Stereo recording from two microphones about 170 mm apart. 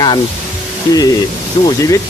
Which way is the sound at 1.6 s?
25° left (ahead or behind).